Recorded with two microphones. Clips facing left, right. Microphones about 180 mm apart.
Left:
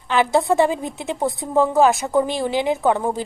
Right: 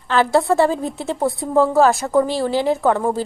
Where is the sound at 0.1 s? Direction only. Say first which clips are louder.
Right 1 dB; 20° left (ahead or behind).